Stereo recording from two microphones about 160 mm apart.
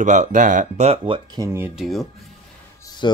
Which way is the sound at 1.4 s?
15° right (ahead or behind).